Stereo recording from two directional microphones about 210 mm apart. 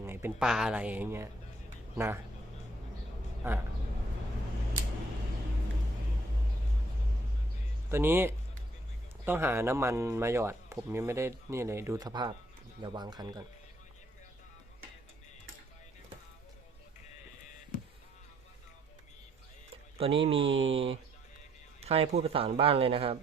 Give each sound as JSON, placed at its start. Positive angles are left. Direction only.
{"t": 0.0, "sound": "speech", "side_deg": -10}
{"t": 3.4, "sound": "speech", "side_deg": -10}
{"t": 7.9, "sound": "a man's voice", "side_deg": -10}
{"t": 19.7, "sound": "speech", "side_deg": -30}
{"t": 20.5, "sound": "speech", "side_deg": -65}
{"t": 20.7, "sound": "a man's voice", "side_deg": -25}